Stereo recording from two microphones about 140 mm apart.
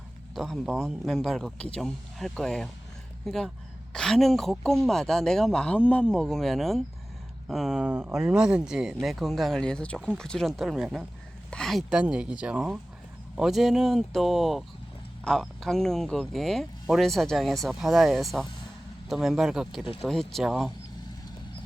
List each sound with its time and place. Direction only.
0.3 s speech: centre (ahead or behind)